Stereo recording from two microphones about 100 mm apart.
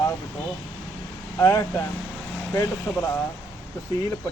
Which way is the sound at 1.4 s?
30° left (ahead or behind).